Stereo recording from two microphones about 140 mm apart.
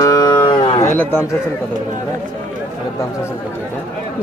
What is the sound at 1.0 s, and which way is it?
Speech, 15° left (ahead or behind).